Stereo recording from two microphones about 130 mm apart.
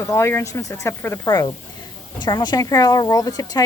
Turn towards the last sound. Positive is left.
turn(degrees=30)  # may be behind; listen again after turning